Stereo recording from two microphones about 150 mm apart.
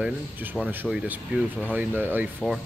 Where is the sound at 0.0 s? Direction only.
10° right (ahead or behind).